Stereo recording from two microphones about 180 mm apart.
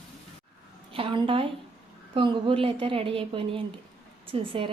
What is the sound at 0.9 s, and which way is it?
A woman's voice, 30° right (ahead or behind).